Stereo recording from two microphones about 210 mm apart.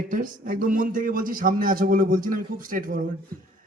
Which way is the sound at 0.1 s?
40° right (ahead or behind).